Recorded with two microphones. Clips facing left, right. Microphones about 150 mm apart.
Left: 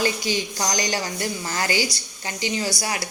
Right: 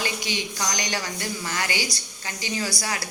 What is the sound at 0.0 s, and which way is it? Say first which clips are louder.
A woman's voice: left 5 dB; 35° left (ahead or behind).